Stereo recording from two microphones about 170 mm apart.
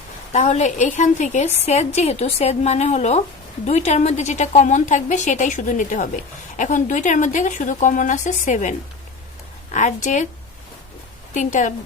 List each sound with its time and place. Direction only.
0.3 s a woman's voice: 45° left (ahead or behind)
9.7 s a woman's voice: 45° left (ahead or behind)
11.3 s a woman's voice: 45° left (ahead or behind)